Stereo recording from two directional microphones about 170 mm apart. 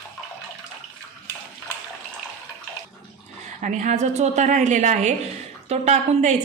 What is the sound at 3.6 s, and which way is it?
Speech, 45° right (ahead or behind).